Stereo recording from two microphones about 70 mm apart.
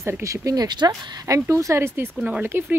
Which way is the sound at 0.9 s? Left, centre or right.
Right.